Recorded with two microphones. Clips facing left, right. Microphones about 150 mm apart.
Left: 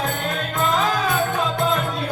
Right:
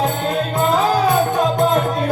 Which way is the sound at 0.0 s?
25° right (ahead or behind).